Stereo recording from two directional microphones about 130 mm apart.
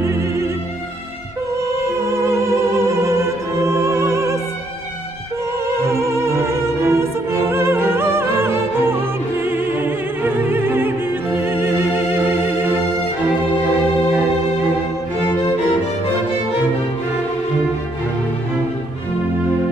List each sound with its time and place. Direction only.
0.0 s music: 20° right (ahead or behind)
1.7 s music: 20° right (ahead or behind)
5.9 s music: 20° right (ahead or behind)